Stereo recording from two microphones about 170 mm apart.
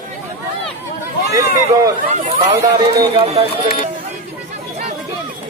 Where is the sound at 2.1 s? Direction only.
40° right (ahead or behind).